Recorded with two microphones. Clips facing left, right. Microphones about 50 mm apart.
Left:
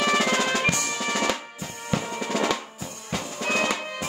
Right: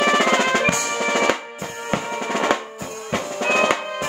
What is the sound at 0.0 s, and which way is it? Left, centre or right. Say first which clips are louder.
Drum: right 5 dB; right.